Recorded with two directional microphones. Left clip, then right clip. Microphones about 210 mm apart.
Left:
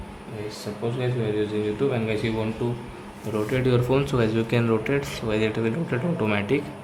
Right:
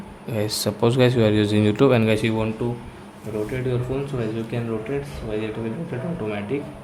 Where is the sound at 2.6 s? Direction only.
15° right (ahead or behind).